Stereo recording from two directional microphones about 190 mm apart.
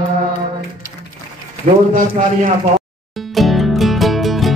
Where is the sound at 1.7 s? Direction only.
40° right (ahead or behind).